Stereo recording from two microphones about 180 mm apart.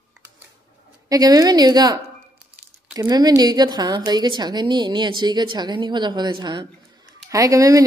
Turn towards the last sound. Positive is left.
turn(degrees=-20)  # may be behind; listen again after turning